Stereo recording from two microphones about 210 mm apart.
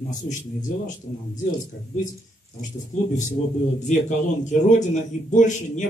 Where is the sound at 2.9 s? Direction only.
35° left (ahead or behind).